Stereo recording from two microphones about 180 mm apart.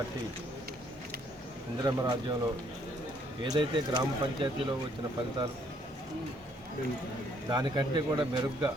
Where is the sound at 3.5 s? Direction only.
25° right (ahead or behind).